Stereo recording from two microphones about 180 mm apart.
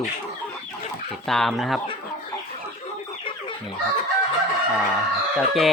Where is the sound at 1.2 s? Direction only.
Centre (ahead or behind).